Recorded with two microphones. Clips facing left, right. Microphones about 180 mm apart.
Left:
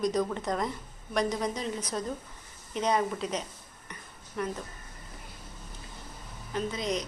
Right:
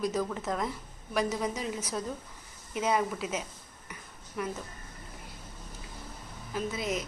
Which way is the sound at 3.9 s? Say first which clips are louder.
Left 1 dB; 5° right (ahead or behind).